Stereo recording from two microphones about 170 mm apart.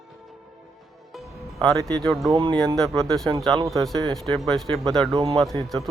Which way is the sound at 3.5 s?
20° right (ahead or behind).